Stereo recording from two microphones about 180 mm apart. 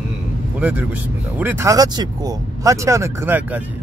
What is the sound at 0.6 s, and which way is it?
Speech, 10° right (ahead or behind).